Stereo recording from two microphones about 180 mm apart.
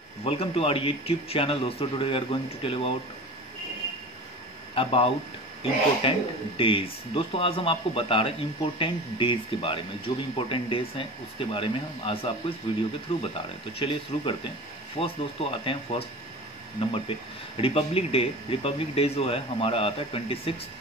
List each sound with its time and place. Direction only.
0.2 s speech: 30° left (ahead or behind)
4.7 s speech: 30° left (ahead or behind)